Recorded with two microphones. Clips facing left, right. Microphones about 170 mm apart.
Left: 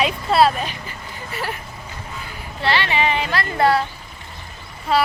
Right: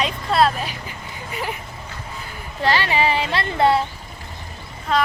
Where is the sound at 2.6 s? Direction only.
40° right (ahead or behind).